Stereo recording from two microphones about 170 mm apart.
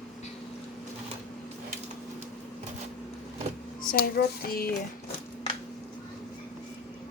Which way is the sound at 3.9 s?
65° left (ahead or behind).